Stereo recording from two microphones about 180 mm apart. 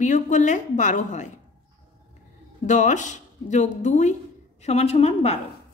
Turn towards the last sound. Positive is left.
turn(degrees=35)  # may be behind; listen again after turning